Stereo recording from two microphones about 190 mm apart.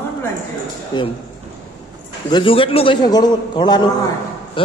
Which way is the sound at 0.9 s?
20° left (ahead or behind).